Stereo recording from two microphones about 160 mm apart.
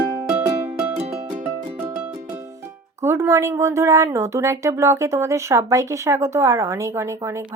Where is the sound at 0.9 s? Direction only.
45° right (ahead or behind).